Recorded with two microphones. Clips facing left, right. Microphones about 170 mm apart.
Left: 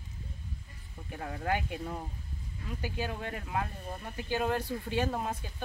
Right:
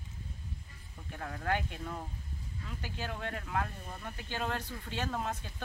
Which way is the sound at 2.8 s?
15° left (ahead or behind).